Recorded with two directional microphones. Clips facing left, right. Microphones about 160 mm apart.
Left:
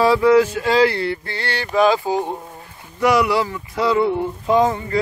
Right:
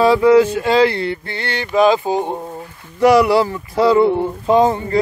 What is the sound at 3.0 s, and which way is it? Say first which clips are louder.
Speech: right 5 dB; 35° right (ahead or behind).